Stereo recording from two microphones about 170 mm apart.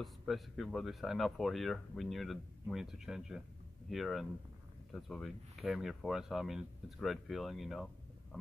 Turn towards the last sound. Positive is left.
turn(degrees=0)  # may be behind; listen again after turning